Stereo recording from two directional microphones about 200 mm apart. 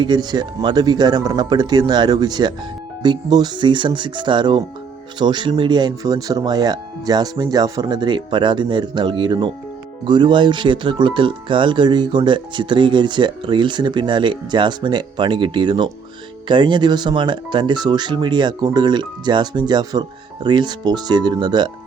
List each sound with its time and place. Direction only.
0.0 s speech: 20° right (ahead or behind)